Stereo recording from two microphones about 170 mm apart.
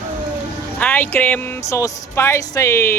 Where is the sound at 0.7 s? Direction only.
10° left (ahead or behind).